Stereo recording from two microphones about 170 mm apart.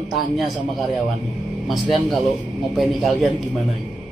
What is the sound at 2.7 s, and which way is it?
Speech, centre (ahead or behind).